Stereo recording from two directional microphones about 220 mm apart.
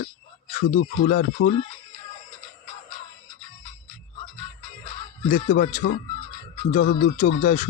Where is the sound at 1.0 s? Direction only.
40° left (ahead or behind).